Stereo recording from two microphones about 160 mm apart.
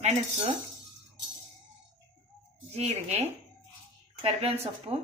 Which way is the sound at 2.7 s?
45° right (ahead or behind).